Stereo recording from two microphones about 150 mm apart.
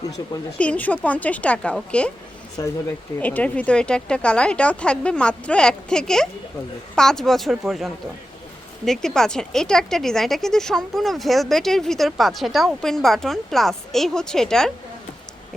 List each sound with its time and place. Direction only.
0.6 s speech: 10° left (ahead or behind)
2.6 s speech: 20° left (ahead or behind)
3.2 s speech: 10° left (ahead or behind)